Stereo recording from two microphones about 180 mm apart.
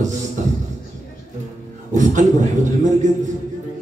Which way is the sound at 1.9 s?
45° right (ahead or behind).